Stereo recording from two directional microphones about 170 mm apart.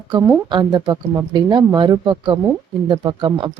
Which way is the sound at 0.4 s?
25° right (ahead or behind).